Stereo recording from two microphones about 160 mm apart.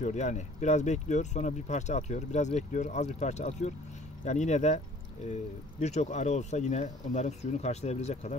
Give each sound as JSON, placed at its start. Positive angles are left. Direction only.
{"t": 0.0, "sound": "speech", "side_deg": 45}